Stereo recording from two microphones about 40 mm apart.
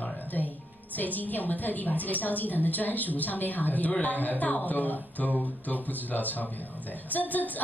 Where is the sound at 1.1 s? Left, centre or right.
Left.